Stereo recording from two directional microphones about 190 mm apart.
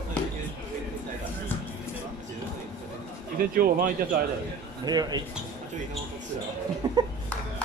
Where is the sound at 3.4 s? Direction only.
50° right (ahead or behind).